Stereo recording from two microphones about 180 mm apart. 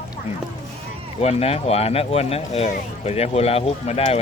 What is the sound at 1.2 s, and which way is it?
Speech, 35° left (ahead or behind).